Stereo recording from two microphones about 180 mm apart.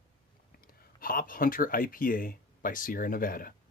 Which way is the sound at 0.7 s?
50° left (ahead or behind).